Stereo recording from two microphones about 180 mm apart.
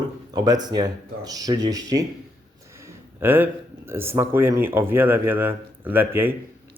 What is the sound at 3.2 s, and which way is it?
Speech, 10° right (ahead or behind).